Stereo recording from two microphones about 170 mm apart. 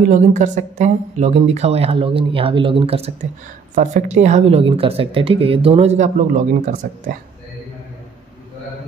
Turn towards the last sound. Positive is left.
turn(degrees=-50)  # may be behind; listen again after turning